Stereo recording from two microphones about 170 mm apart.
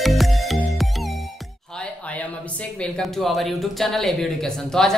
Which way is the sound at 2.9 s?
Centre (ahead or behind).